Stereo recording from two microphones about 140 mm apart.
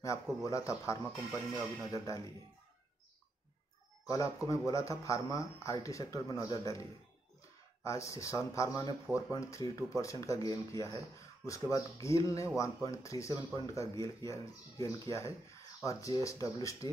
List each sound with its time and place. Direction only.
0.0 s speech: 20° left (ahead or behind)
4.0 s speech: 25° left (ahead or behind)